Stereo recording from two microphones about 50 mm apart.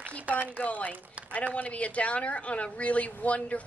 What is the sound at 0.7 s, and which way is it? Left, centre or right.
Speech, left.